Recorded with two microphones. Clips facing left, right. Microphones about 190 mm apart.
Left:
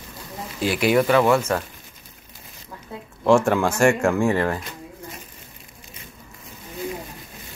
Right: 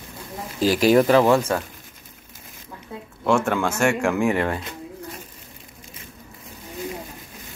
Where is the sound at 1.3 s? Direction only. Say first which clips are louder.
Even; 10° right (ahead or behind).